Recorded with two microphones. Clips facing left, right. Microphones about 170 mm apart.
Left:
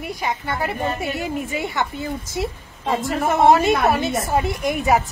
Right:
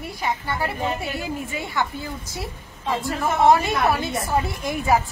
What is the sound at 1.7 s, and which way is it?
A woman's voice, 20° left (ahead or behind).